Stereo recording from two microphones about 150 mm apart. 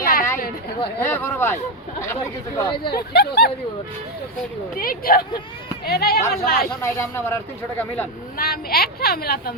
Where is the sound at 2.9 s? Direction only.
90° left.